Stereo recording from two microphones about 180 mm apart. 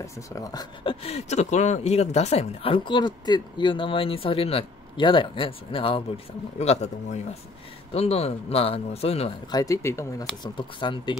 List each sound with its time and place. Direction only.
0.0 s speech: 20° left (ahead or behind)
1.0 s speech: 35° left (ahead or behind)
9.5 s speech: 20° left (ahead or behind)